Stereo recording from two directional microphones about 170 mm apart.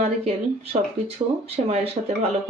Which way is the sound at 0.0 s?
35° right (ahead or behind).